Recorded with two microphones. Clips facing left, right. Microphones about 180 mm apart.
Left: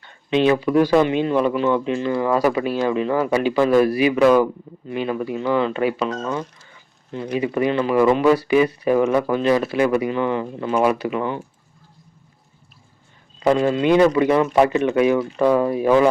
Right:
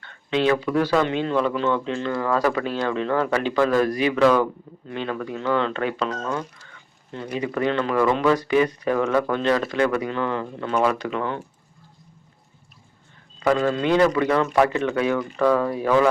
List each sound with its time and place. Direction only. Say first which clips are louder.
0.0 s speech: left 4 dB; 15° left (ahead or behind)
13.4 s speech: left 3 dB; 20° left (ahead or behind)